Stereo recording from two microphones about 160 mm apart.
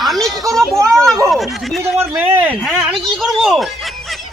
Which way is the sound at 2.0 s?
10° right (ahead or behind).